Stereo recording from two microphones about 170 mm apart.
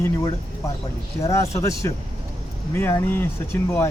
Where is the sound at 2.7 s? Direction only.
15° left (ahead or behind).